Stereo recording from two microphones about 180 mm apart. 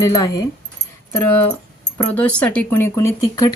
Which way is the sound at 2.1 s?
10° left (ahead or behind).